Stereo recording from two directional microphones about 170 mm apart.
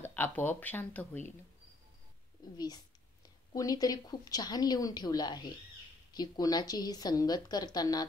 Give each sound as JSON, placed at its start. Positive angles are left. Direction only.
{"t": 0.0, "sound": "speech", "side_deg": 10}
{"t": 2.5, "sound": "a woman's voice", "side_deg": 25}